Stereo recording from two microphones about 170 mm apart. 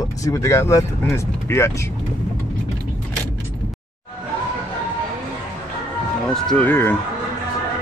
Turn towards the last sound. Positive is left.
turn(degrees=10)  # may be behind; listen again after turning